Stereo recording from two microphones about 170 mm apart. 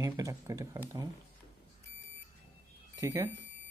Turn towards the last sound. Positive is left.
turn(degrees=-20)  # may be behind; listen again after turning